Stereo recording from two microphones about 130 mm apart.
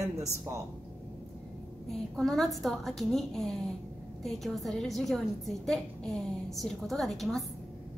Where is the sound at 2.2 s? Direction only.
Centre (ahead or behind).